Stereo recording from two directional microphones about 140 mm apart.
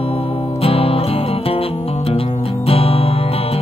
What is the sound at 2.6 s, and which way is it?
Music, 45° left (ahead or behind).